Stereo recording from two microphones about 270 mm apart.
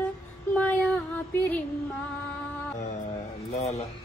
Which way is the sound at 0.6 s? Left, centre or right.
Centre.